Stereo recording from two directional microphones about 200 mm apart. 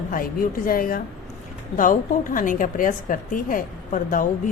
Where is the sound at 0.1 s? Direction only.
45° left (ahead or behind).